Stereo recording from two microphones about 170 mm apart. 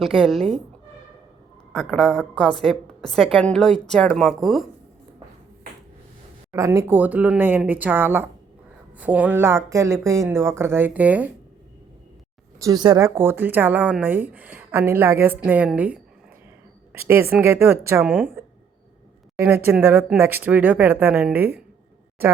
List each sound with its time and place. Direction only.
0.0 s a woman's voice: centre (ahead or behind)
1.7 s a woman's voice: 5° left (ahead or behind)
6.5 s speech: 15° right (ahead or behind)
12.5 s speech: 20° right (ahead or behind)
17.4 s speech: 15° right (ahead or behind)